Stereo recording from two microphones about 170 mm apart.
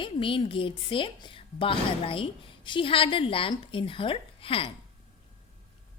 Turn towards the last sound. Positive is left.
turn(degrees=30)  # may be behind; listen again after turning